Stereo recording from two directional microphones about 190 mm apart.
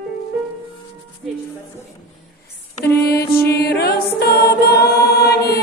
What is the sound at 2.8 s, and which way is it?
Music, 55° left (ahead or behind).